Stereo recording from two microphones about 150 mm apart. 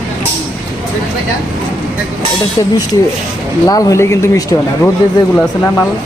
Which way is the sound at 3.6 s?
25° left (ahead or behind).